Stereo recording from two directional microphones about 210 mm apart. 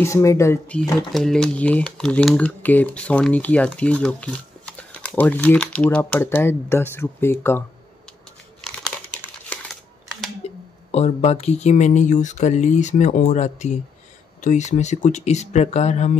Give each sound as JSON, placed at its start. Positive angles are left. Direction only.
{"t": 0.0, "sound": "speech", "side_deg": 15}
{"t": 8.6, "sound": "crumpling", "side_deg": 5}
{"t": 10.4, "sound": "a sound", "side_deg": 30}
{"t": 10.9, "sound": "speech", "side_deg": 30}